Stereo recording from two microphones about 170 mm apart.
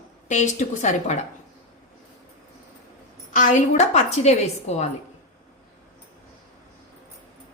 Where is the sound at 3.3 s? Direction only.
50° left (ahead or behind).